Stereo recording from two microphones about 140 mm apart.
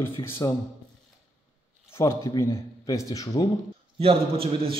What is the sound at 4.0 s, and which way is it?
Speech, 45° right (ahead or behind).